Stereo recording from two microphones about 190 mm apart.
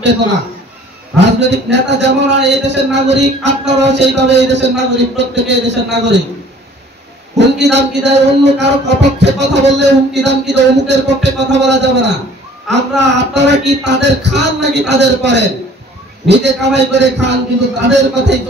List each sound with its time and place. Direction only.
1.1 s a man's voice: 65° right (ahead or behind)
7.3 s a man's voice: 65° right (ahead or behind)